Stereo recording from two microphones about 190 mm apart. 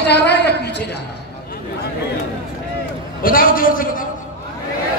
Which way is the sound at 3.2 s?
45° left (ahead or behind).